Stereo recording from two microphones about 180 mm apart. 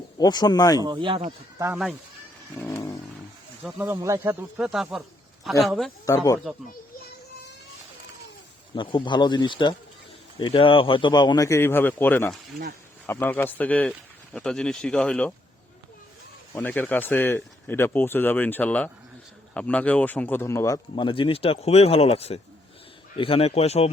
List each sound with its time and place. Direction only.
0.2 s speech: 20° left (ahead or behind)
0.8 s speech: 25° right (ahead or behind)
1.5 s speech: 20° right (ahead or behind)
2.6 s vehicle: 15° left (ahead or behind)
3.6 s speech: 10° right (ahead or behind)
6.1 s speech: 20° left (ahead or behind)
8.7 s a man's voice: 25° left (ahead or behind); by 15.3 s 5° left (ahead or behind)
16.6 s a man's voice: 10° left (ahead or behind); by 23.9 s 35° left (ahead or behind)